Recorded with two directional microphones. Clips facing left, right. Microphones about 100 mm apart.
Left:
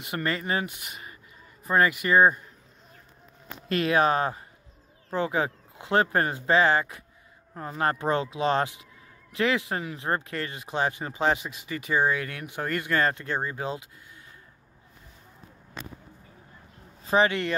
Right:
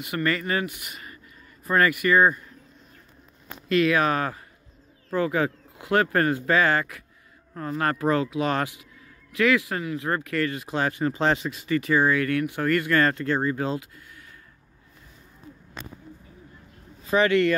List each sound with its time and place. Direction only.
0.0 s speech: 25° left (ahead or behind)
3.6 s speech: 35° left (ahead or behind); by 14.2 s 15° left (ahead or behind)
17.1 s speech: 25° left (ahead or behind)